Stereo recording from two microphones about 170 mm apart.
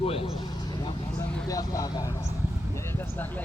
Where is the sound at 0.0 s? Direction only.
35° left (ahead or behind).